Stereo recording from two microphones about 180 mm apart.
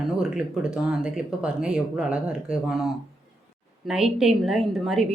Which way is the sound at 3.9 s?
Centre (ahead or behind).